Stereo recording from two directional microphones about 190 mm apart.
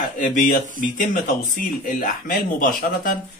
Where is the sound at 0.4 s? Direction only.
45° left (ahead or behind).